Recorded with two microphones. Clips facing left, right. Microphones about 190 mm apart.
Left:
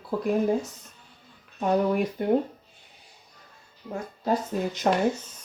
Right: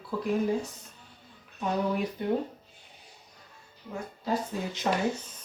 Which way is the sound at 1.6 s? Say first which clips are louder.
Left 5 dB; 50° left (ahead or behind).